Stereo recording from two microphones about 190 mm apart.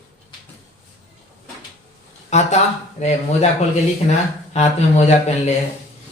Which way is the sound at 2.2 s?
35° left (ahead or behind).